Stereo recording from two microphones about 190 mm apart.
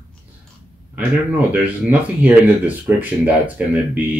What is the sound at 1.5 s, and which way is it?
Speech, 10° right (ahead or behind).